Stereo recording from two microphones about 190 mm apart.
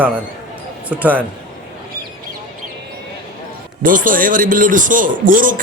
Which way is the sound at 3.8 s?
45° right (ahead or behind).